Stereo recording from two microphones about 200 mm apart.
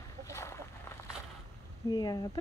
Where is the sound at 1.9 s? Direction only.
20° left (ahead or behind).